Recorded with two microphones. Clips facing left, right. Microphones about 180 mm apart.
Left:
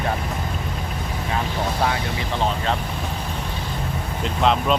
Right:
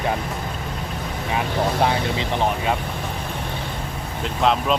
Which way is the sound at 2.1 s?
15° right (ahead or behind).